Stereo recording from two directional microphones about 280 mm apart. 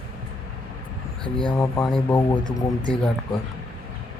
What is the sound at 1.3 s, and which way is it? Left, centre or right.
Speech, centre.